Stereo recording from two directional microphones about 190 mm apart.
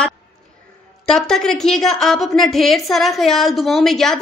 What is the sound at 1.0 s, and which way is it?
A woman's voice, centre (ahead or behind).